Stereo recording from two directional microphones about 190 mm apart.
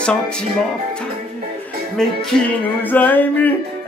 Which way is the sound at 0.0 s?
5° left (ahead or behind).